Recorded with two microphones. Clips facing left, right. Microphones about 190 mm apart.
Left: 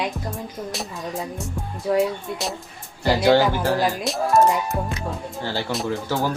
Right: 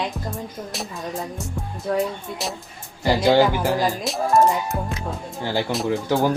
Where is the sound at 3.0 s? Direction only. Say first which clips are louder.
Even; 10° right (ahead or behind).